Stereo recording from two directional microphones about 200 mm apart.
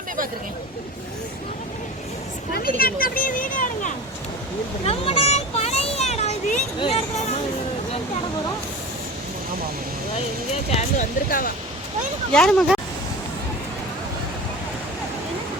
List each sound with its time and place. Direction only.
2.5 s speech: 50° left (ahead or behind)
4.9 s a sound: 30° left (ahead or behind)
10.8 s speech: 40° left (ahead or behind)
12.3 s speech: 5° left (ahead or behind)